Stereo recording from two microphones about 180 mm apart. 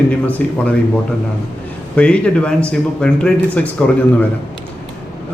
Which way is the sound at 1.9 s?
5° left (ahead or behind).